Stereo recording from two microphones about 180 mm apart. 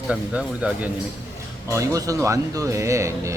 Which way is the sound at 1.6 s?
15° right (ahead or behind).